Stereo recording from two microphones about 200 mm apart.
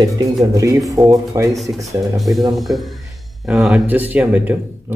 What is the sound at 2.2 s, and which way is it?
Speech, centre (ahead or behind).